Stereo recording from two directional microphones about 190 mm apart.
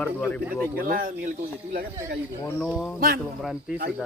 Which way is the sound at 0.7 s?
50° right (ahead or behind).